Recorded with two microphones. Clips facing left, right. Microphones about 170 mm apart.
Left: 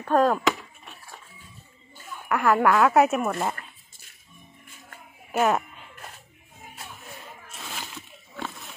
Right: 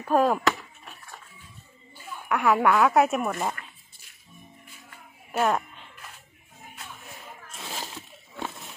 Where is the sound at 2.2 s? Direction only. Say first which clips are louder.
Left 1 dB; centre (ahead or behind).